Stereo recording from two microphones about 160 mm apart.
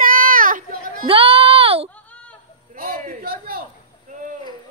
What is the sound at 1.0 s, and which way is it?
Speech, 35° right (ahead or behind).